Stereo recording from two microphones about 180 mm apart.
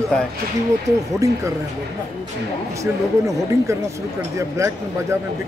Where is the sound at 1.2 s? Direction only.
20° right (ahead or behind).